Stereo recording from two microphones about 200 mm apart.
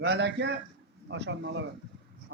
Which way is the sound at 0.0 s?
55° right (ahead or behind).